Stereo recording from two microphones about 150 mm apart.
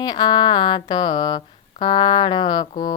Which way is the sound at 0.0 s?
30° left (ahead or behind).